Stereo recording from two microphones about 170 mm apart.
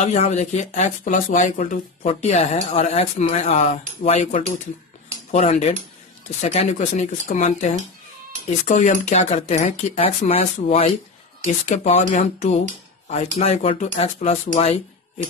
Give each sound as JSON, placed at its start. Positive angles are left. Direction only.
{"t": 0.0, "sound": "speech", "side_deg": 45}